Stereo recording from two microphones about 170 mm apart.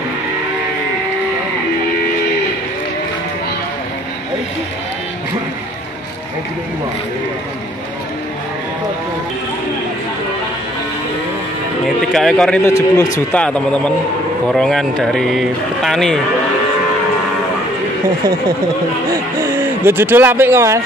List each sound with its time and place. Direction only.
12.1 s a man's voice: 5° left (ahead or behind)
12.6 s speech: 20° left (ahead or behind)
13.3 s speech: 5° left (ahead or behind)
19.4 s speech: 15° right (ahead or behind)